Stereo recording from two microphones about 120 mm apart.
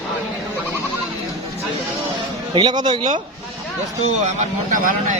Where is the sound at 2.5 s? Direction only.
40° right (ahead or behind).